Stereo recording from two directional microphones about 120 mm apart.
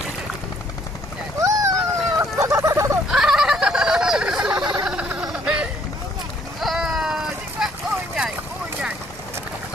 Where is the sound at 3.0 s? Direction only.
5° right (ahead or behind).